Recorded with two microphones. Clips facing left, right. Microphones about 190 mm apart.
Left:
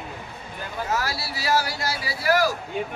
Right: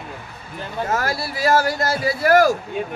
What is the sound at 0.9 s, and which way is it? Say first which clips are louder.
Speech: right 4 dB; 50° right (ahead or behind).